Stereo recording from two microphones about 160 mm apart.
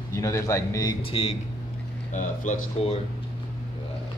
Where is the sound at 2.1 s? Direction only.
50° left (ahead or behind).